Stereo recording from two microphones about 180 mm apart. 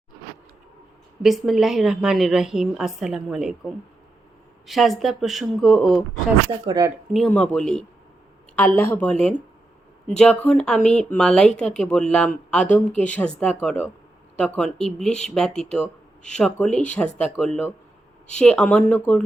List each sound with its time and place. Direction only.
1.2 s a woman's voice: centre (ahead or behind)
4.6 s a woman's voice: centre (ahead or behind)
6.7 s speech: 20° right (ahead or behind)
6.9 s a woman's voice: centre (ahead or behind)
10.2 s a woman's voice: 5° left (ahead or behind)